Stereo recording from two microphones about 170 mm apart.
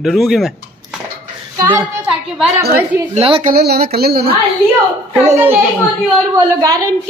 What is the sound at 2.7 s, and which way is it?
Speech, 10° right (ahead or behind).